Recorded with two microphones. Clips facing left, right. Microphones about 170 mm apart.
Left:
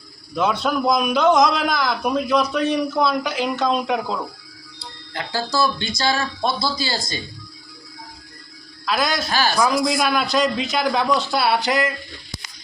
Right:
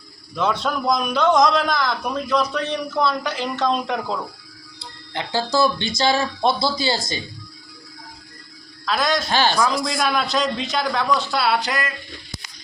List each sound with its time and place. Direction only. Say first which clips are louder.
0.3 s a man's voice: left 2 dB; 5° left (ahead or behind)
5.1 s speech: right 2 dB; 20° right (ahead or behind)
8.9 s a man's voice: right 1 dB; 5° left (ahead or behind)
11.1 s speech: left 1 dB; 15° left (ahead or behind)